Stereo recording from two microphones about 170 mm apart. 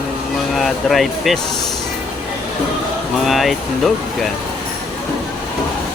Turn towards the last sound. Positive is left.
turn(degrees=0)  # may be behind; listen again after turning